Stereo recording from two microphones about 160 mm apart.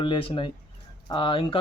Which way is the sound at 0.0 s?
30° left (ahead or behind).